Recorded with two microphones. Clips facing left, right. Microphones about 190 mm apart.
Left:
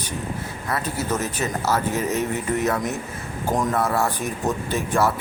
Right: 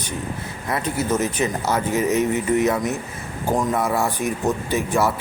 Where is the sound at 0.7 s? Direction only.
15° right (ahead or behind).